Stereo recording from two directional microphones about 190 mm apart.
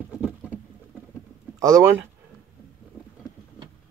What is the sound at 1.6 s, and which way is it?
Speech, 15° right (ahead or behind).